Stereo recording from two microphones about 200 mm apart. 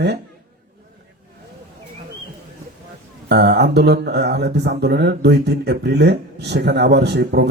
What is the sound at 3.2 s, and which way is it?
A man's voice, 55° right (ahead or behind).